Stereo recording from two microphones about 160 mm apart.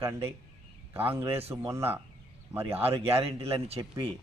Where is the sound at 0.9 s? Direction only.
15° right (ahead or behind).